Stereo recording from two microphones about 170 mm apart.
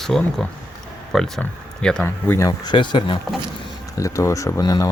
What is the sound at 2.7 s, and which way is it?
Speech, 30° left (ahead or behind).